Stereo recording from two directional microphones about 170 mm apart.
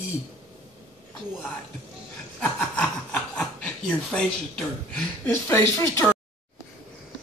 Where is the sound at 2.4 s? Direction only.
10° left (ahead or behind).